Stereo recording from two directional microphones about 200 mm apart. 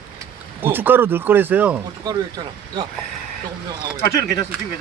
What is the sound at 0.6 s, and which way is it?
Speech, 10° right (ahead or behind).